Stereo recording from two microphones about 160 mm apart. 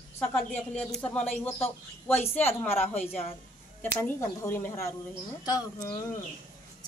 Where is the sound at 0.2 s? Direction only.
5° left (ahead or behind); by 5.9 s 20° left (ahead or behind).